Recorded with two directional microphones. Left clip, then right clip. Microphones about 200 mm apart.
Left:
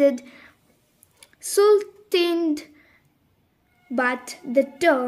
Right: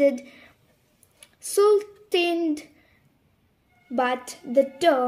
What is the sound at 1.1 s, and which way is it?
Speech, 45° left (ahead or behind).